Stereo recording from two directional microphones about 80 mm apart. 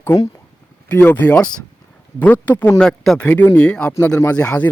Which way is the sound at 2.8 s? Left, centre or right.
Centre.